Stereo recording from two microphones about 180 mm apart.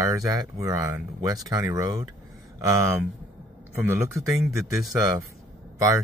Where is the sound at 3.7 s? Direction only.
15° right (ahead or behind).